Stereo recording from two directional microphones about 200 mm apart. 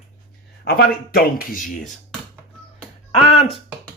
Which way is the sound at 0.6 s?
50° left (ahead or behind).